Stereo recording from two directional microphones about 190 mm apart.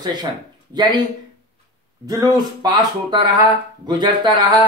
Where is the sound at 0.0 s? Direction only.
20° right (ahead or behind).